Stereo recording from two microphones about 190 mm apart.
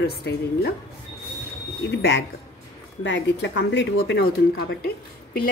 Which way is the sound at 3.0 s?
70° left (ahead or behind).